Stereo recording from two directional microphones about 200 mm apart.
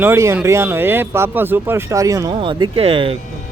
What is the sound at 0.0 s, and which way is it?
Speech, 15° right (ahead or behind).